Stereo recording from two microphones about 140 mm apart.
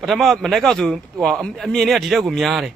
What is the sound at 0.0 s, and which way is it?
A man's voice, centre (ahead or behind).